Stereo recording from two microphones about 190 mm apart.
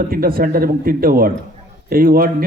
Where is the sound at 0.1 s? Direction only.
50° right (ahead or behind).